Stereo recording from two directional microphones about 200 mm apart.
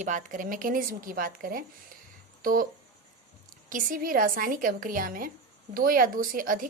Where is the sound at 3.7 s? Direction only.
45° right (ahead or behind).